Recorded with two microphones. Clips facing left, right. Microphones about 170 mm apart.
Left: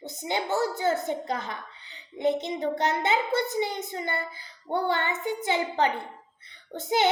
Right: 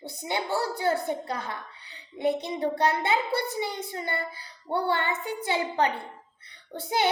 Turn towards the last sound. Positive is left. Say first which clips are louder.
# left 2 dB
turn(degrees=20)  # may be behind; listen again after turning